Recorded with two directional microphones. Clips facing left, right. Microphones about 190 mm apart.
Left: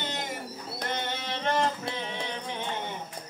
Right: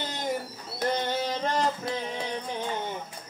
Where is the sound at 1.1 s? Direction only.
35° right (ahead or behind).